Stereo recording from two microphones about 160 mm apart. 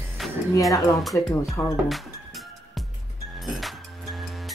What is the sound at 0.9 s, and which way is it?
Speech, centre (ahead or behind).